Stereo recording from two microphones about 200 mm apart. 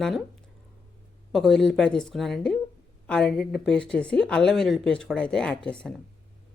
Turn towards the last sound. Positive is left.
turn(degrees=5)  # may be behind; listen again after turning